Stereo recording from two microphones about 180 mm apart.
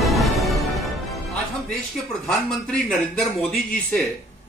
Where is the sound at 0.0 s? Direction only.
Centre (ahead or behind).